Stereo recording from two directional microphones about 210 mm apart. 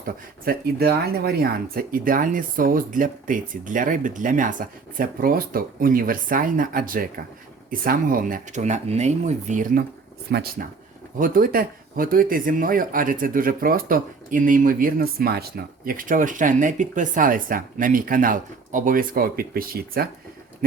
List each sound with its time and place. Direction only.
0.4 s speech: 45° right (ahead or behind)
10.3 s speech: 50° right (ahead or behind)